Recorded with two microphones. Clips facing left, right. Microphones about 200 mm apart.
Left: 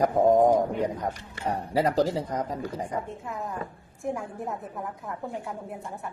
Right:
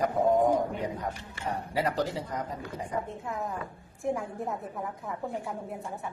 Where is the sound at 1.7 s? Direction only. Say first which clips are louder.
Left 6 dB; 35° left (ahead or behind).